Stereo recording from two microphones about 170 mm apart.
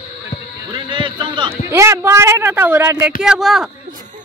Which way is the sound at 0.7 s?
30° right (ahead or behind).